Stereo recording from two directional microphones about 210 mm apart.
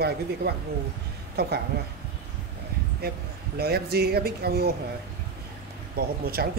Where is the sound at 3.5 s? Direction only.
50° right (ahead or behind).